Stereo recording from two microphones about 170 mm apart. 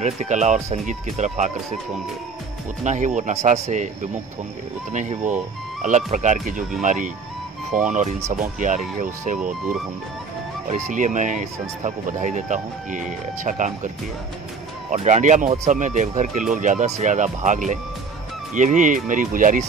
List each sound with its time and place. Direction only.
0.0 s speech: 40° right (ahead or behind)
2.8 s speech: 45° right (ahead or behind)
10.7 s speech: 45° right (ahead or behind)
14.9 s speech: 45° right (ahead or behind)